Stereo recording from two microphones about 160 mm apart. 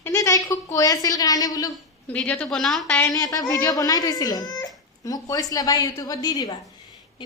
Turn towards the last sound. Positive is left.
turn(degrees=25)  # may be behind; listen again after turning